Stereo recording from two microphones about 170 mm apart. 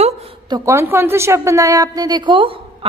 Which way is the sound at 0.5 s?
15° right (ahead or behind).